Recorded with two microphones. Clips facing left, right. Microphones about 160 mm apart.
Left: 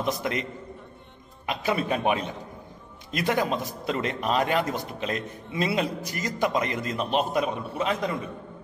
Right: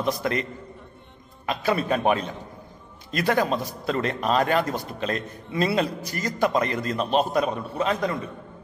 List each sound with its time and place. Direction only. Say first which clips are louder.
0.0 s a man's voice: right 2 dB; 15° left (ahead or behind)
7.4 s a man's voice: right 2 dB; 35° right (ahead or behind)